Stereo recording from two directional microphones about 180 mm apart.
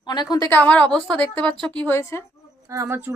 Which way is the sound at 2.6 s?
15° right (ahead or behind).